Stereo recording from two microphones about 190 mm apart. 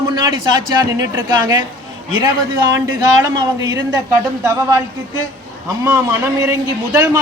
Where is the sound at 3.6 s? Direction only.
20° right (ahead or behind).